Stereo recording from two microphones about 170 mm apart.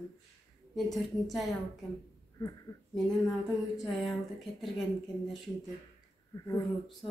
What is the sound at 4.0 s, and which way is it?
Speech, centre (ahead or behind).